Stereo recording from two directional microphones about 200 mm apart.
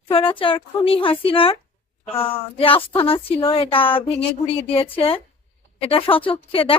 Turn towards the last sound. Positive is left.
turn(degrees=25)  # may be behind; listen again after turning